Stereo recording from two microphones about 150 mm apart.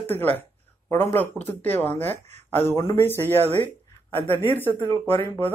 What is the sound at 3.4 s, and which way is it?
Speech, 45° right (ahead or behind).